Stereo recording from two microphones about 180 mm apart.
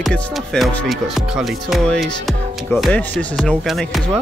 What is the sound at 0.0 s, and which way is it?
Speech, centre (ahead or behind).